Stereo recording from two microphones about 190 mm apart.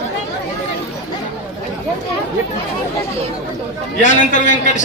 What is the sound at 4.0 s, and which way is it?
Speech, 40° left (ahead or behind).